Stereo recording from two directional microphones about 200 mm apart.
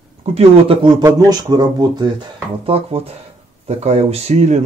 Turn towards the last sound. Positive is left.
turn(degrees=-35)  # may be behind; listen again after turning